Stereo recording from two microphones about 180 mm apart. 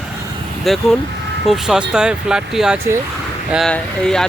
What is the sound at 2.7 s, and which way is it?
Speech, 15° right (ahead or behind).